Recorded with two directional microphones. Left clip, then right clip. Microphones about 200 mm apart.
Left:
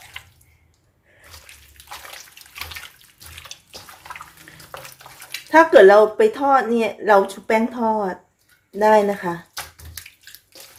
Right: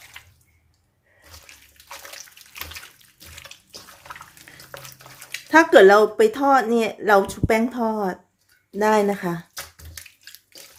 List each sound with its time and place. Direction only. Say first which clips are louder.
0.1 s bathtub: left 7 dB; 10° right (ahead or behind)
4.5 s bathtub: left 1 dB; 15° right (ahead or behind)
5.5 s speech: left 2 dB; 20° right (ahead or behind)